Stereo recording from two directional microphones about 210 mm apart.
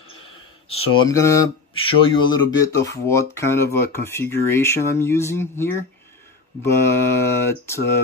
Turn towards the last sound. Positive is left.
turn(degrees=10)  # may be behind; listen again after turning